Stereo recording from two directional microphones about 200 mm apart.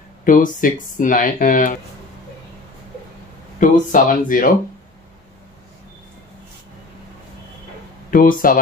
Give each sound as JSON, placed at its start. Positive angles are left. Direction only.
{"t": 0.2, "sound": "speech", "side_deg": 45}
{"t": 3.5, "sound": "speech", "side_deg": 40}
{"t": 8.1, "sound": "speech", "side_deg": 45}